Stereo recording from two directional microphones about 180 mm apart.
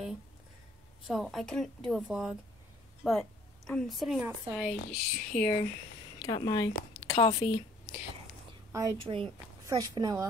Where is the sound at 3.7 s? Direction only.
Centre (ahead or behind).